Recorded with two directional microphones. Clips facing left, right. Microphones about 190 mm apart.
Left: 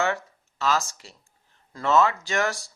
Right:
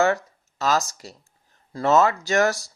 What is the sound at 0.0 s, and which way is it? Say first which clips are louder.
Speech: right 5 dB; 40° right (ahead or behind).